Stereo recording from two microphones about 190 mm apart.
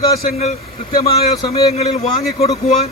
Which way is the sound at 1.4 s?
20° left (ahead or behind).